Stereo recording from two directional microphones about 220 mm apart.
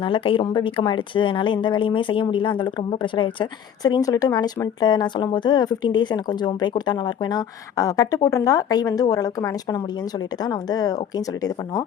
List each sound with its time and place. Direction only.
0.0 s speech: 25° left (ahead or behind)